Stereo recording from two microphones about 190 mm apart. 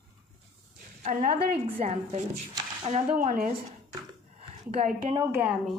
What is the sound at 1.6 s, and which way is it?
Speech, 30° right (ahead or behind).